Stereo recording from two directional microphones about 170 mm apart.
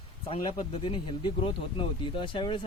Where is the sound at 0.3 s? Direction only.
30° left (ahead or behind).